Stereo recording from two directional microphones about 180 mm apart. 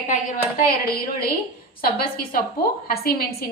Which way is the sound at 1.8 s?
55° left (ahead or behind).